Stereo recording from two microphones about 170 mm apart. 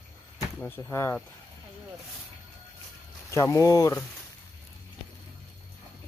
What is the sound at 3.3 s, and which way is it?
Speech, 20° left (ahead or behind).